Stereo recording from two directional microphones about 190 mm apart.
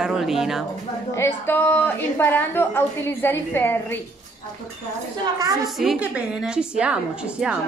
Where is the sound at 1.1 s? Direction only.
10° left (ahead or behind).